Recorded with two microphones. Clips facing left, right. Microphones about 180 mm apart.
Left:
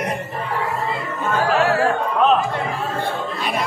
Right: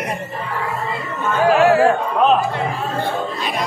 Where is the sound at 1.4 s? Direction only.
15° right (ahead or behind).